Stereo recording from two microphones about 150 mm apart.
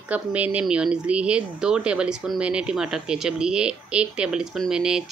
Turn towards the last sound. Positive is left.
turn(degrees=-5)  # may be behind; listen again after turning